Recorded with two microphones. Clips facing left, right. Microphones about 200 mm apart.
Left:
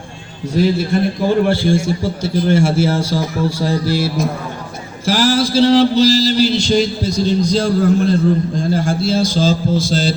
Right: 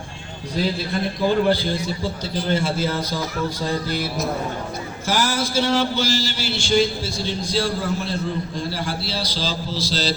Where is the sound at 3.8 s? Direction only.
90° left.